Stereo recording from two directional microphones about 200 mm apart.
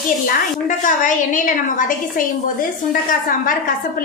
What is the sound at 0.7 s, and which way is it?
A woman's voice, 40° left (ahead or behind).